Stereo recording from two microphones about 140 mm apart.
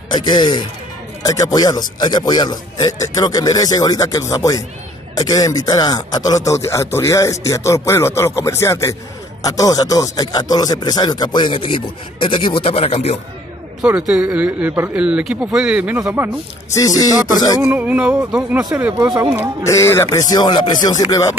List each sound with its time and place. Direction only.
0.1 s speech: 30° left (ahead or behind); by 13.2 s 45° left (ahead or behind)
13.7 s speech: 5° right (ahead or behind)
16.7 s speech: 25° left (ahead or behind)
17.6 s speech: 10° right (ahead or behind)
19.6 s speech: 20° left (ahead or behind)